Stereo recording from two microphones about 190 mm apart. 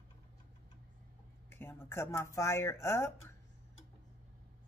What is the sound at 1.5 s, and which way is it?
Speech, 10° left (ahead or behind).